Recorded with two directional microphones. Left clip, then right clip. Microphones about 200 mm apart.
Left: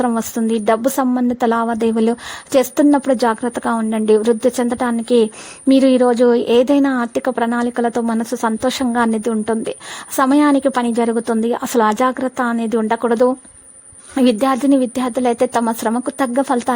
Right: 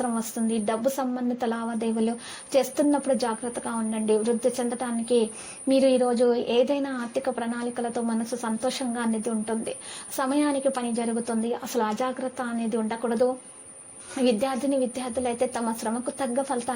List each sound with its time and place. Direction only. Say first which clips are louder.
0.0 s a woman's voice: left 10 dB; 50° left (ahead or behind)